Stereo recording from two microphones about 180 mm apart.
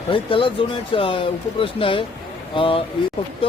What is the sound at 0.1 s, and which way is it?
A man's voice, 30° left (ahead or behind).